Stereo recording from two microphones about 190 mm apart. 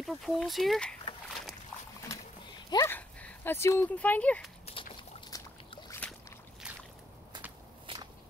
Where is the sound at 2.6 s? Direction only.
20° left (ahead or behind).